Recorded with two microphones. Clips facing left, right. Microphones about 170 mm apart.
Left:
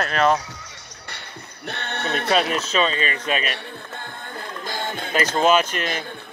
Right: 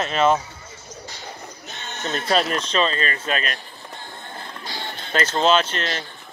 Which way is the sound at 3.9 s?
55° left (ahead or behind).